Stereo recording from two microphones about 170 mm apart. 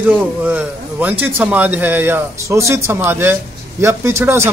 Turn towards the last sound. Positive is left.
turn(degrees=-15)  # may be behind; listen again after turning